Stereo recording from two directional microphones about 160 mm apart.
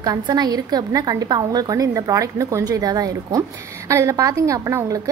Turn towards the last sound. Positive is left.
turn(degrees=-20)  # may be behind; listen again after turning